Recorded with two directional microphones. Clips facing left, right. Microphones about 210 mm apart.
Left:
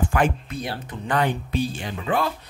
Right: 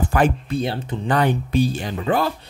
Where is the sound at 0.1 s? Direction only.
35° right (ahead or behind).